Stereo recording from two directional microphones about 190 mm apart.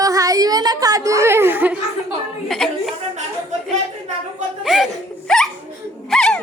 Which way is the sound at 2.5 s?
Centre (ahead or behind).